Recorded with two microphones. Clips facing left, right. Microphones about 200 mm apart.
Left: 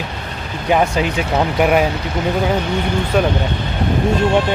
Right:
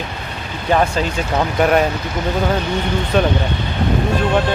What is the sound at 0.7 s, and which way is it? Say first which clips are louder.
Speech: left 1 dB; 15° left (ahead or behind).